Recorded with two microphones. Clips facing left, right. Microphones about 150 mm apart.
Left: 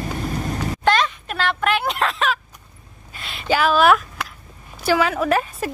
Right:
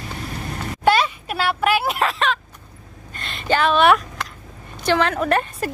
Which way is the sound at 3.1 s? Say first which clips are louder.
Even; 5° left (ahead or behind).